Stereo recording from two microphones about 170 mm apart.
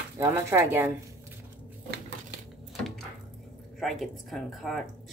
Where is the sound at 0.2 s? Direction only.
15° right (ahead or behind).